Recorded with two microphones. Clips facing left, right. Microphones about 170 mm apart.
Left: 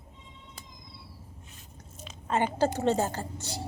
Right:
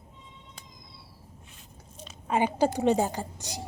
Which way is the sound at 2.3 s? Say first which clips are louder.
Right 2 dB; 10° right (ahead or behind).